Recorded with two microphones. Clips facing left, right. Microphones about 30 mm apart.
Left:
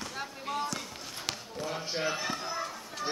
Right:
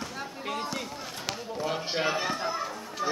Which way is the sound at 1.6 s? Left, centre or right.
Right.